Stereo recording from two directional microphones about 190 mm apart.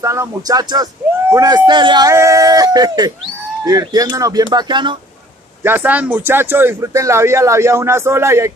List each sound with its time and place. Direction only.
0.0 s speech: 15° right (ahead or behind)
5.6 s speech: 10° right (ahead or behind)